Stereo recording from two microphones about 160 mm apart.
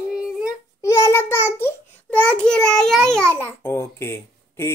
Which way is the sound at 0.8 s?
20° left (ahead or behind).